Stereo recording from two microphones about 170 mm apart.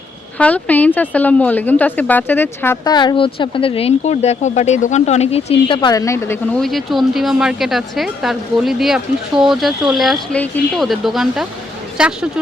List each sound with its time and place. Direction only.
0.3 s a woman's voice: 10° left (ahead or behind)
2.8 s speech: 25° left (ahead or behind)
6.6 s speech: centre (ahead or behind)